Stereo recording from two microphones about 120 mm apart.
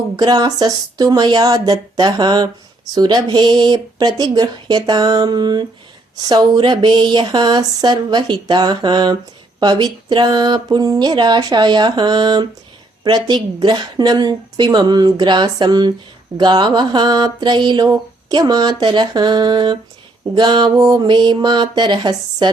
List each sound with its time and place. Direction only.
0.2 s speech: 35° right (ahead or behind)